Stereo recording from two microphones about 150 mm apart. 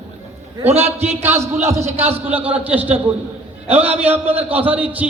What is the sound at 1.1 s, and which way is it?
A man's voice, 15° right (ahead or behind).